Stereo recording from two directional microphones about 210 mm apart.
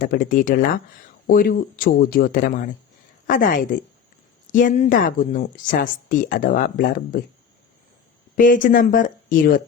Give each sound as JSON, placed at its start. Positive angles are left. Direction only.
{"t": 0.0, "sound": "speech", "side_deg": 40}
{"t": 8.4, "sound": "speech", "side_deg": 40}